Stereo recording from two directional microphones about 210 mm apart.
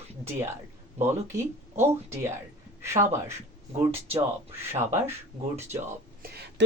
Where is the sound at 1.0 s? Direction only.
10° right (ahead or behind).